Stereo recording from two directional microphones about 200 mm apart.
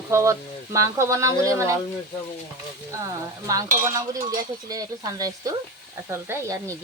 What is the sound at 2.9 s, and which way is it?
Speech, 15° right (ahead or behind).